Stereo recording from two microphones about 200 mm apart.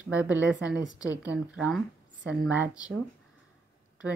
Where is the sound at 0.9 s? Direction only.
15° left (ahead or behind).